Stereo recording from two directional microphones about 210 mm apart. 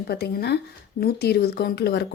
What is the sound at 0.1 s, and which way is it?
Speech, 50° left (ahead or behind).